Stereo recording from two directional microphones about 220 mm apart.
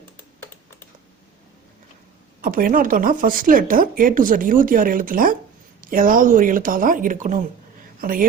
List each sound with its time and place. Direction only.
2.4 s a woman's voice: 40° right (ahead or behind)